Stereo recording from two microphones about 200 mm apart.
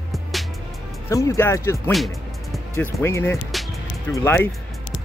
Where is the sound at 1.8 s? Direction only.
Centre (ahead or behind).